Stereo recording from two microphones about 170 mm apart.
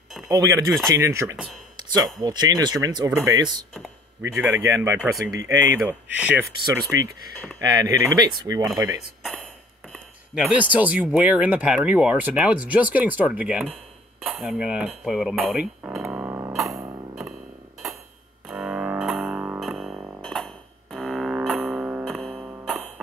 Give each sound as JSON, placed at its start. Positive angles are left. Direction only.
{"t": 0.3, "sound": "speech", "side_deg": -20}
{"t": 1.8, "sound": "a sound", "side_deg": -25}
{"t": 2.2, "sound": "speech", "side_deg": -20}
{"t": 5.8, "sound": "speech", "side_deg": -5}
{"t": 7.5, "sound": "speech", "side_deg": -20}
{"t": 9.2, "sound": "a sound", "side_deg": 0}
{"t": 9.9, "sound": "speech", "side_deg": -5}
{"t": 16.0, "sound": "music", "side_deg": -15}
{"t": 18.5, "sound": "music", "side_deg": -5}
{"t": 21.7, "sound": "music", "side_deg": -10}
{"t": 22.0, "sound": "music", "side_deg": 5}
{"t": 22.4, "sound": "music", "side_deg": -15}